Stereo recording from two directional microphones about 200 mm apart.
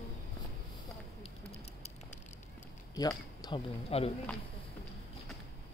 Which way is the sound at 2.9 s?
20° left (ahead or behind).